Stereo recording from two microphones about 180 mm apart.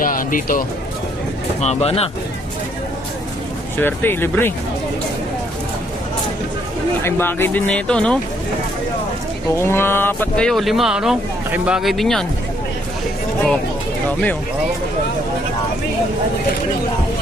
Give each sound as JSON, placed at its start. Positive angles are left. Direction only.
{"t": 0.0, "sound": "speech", "side_deg": 50}
{"t": 1.6, "sound": "speech", "side_deg": 35}
{"t": 3.8, "sound": "speech", "side_deg": 10}
{"t": 7.0, "sound": "speech", "side_deg": 10}
{"t": 9.5, "sound": "speech", "side_deg": 15}